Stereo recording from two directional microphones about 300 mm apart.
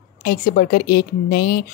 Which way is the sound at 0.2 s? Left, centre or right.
Left.